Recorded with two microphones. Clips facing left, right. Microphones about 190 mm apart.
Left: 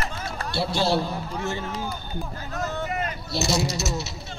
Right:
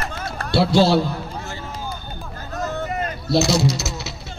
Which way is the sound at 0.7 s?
90° right.